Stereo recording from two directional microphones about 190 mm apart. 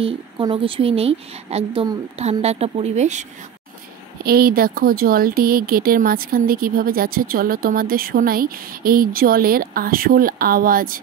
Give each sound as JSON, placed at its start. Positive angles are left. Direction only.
{"t": 0.0, "sound": "a woman's voice", "side_deg": -30}
{"t": 4.2, "sound": "speech", "side_deg": -55}